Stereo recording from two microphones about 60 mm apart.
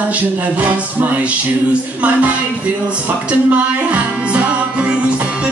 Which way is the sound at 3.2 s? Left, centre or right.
Right.